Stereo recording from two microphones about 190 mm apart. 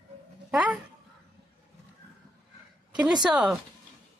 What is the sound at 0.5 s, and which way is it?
Speech, 5° right (ahead or behind).